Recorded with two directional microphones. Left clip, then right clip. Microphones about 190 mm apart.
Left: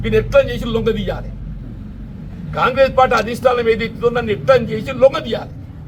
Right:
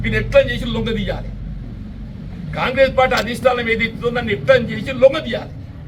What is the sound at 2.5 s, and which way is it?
A man's voice, 5° left (ahead or behind).